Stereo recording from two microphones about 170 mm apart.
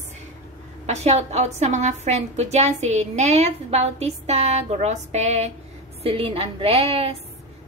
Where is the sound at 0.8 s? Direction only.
40° right (ahead or behind).